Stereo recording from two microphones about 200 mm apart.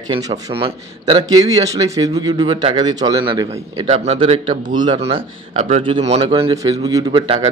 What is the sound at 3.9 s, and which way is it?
Speech, 30° right (ahead or behind).